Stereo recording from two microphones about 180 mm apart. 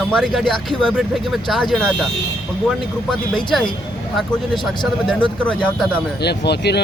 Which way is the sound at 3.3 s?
Centre (ahead or behind).